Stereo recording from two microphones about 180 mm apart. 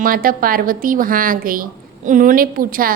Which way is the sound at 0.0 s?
50° right (ahead or behind).